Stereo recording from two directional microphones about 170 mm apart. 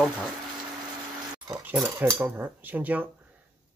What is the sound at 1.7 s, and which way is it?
Speech, 10° right (ahead or behind).